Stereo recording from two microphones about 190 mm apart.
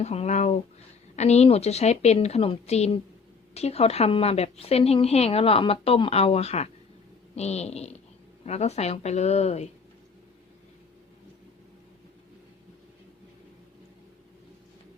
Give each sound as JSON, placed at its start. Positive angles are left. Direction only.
{"t": 0.0, "sound": "a woman's voice", "side_deg": 35}